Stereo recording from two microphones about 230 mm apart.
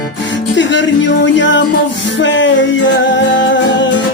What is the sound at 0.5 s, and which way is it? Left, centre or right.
Speech, left.